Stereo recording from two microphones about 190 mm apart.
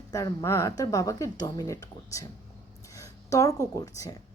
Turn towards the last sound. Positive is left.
turn(degrees=20)  # may be behind; listen again after turning